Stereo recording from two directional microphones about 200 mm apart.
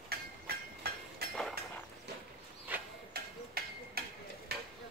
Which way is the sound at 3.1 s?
50° right (ahead or behind).